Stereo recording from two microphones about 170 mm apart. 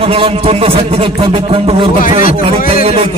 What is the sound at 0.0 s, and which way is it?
A man's voice, 35° right (ahead or behind).